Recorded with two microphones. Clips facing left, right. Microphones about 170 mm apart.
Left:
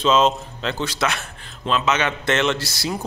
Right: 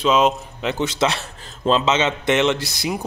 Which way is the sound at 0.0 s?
10° right (ahead or behind).